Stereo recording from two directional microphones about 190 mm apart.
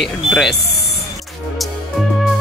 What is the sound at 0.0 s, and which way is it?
Speech, centre (ahead or behind).